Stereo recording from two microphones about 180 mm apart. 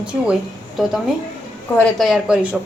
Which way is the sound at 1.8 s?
Centre (ahead or behind).